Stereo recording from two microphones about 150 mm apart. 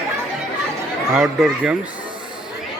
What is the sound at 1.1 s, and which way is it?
Speech, centre (ahead or behind).